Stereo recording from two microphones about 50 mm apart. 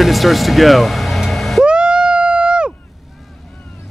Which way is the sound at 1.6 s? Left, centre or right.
Centre.